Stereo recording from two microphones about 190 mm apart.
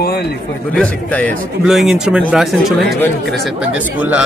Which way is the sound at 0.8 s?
5° left (ahead or behind).